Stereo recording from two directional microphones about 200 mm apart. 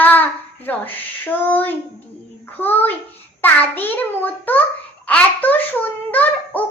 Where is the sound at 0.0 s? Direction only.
10° left (ahead or behind).